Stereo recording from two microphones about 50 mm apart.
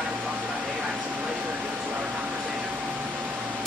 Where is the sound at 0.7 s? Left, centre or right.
Centre.